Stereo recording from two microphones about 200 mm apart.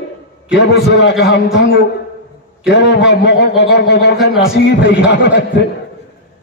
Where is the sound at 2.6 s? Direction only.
60° left (ahead or behind).